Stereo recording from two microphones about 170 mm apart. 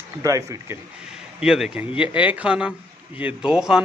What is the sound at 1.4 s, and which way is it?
A man's voice, 5° right (ahead or behind).